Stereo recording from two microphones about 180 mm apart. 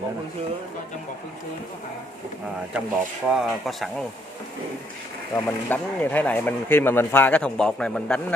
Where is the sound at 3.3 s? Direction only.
Centre (ahead or behind).